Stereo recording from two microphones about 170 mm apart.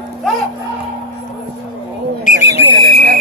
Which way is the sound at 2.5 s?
70° right (ahead or behind).